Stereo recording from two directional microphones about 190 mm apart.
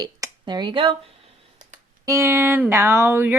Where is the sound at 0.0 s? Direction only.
20° right (ahead or behind).